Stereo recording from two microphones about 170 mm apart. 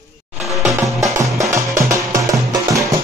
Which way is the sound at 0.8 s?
20° right (ahead or behind).